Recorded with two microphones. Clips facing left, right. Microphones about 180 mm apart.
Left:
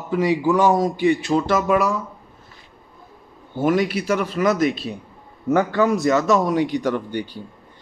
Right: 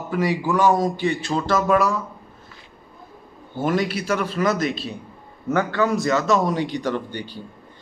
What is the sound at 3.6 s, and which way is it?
A man's voice, 15° left (ahead or behind).